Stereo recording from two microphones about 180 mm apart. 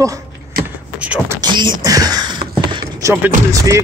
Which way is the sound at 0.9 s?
5° right (ahead or behind).